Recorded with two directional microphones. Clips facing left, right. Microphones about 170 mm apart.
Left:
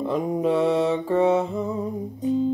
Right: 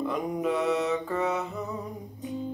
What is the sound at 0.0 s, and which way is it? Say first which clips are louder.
Mantra: left 5 dB; 30° left (ahead or behind).